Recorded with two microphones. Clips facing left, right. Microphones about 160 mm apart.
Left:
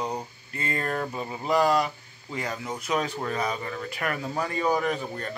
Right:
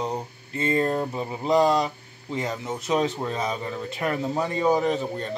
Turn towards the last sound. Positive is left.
turn(degrees=-20)  # may be behind; listen again after turning